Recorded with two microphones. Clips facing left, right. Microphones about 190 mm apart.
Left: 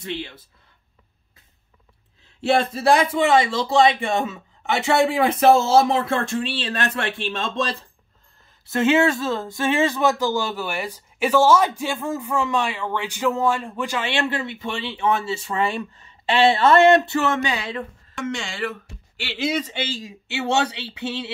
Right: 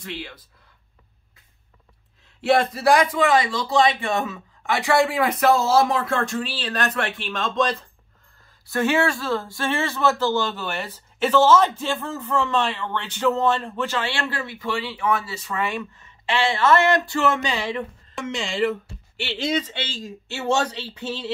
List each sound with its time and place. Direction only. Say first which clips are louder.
0.0 s speech: left 4 dB; 25° left (ahead or behind)
2.4 s speech: even; 25° left (ahead or behind)
18.1 s speech: right 1 dB; centre (ahead or behind)
20.1 s speech: right 3 dB; 70° left (ahead or behind)